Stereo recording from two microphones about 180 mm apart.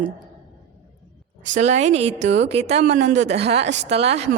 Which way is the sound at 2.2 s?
80° right.